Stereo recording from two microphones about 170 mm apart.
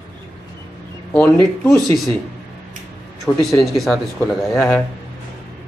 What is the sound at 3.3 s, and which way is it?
Speech, centre (ahead or behind).